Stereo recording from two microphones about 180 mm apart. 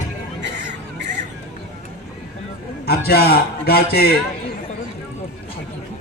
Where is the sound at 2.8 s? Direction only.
60° left (ahead or behind).